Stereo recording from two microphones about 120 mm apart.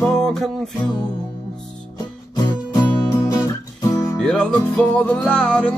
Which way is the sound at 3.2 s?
30° left (ahead or behind).